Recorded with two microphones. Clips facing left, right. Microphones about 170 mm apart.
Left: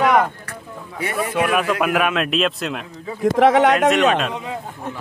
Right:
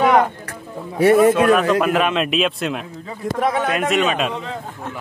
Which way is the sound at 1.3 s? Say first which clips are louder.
Right 5 dB; 15° left (ahead or behind).